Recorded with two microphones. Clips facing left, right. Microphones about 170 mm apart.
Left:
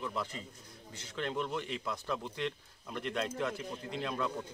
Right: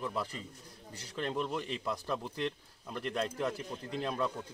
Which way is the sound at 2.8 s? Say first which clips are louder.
Even; centre (ahead or behind).